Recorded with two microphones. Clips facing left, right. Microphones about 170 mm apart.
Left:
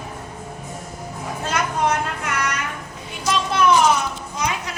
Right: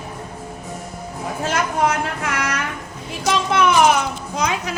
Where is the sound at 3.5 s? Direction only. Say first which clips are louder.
Right 1 dB; 65° right (ahead or behind).